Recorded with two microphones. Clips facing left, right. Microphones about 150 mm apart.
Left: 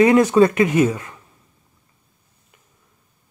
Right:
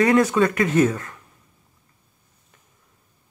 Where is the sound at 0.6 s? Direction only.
10° left (ahead or behind).